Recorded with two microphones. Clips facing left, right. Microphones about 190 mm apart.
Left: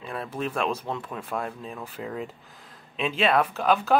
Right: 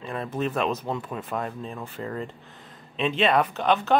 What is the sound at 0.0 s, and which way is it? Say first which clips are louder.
Speech: right 3 dB; centre (ahead or behind).